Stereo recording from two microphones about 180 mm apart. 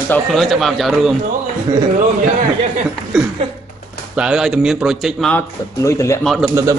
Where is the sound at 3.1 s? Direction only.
5° right (ahead or behind).